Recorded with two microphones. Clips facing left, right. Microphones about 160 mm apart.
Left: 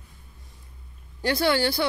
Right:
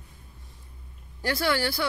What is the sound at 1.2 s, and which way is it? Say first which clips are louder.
Speech: left 4 dB; 25° left (ahead or behind).